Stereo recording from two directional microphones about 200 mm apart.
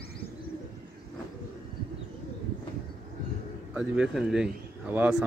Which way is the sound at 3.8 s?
5° right (ahead or behind).